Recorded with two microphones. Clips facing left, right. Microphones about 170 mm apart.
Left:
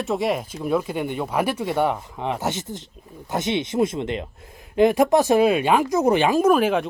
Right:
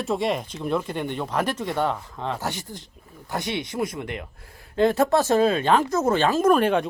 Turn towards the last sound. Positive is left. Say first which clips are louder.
# left 1 dB
turn(degrees=5)  # may be behind; listen again after turning